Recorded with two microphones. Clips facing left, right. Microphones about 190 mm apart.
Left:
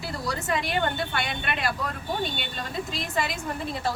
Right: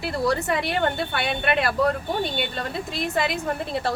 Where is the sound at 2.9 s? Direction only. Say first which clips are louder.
Right 6 dB; 60° right (ahead or behind).